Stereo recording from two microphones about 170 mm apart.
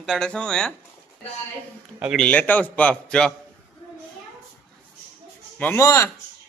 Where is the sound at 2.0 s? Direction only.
5° right (ahead or behind).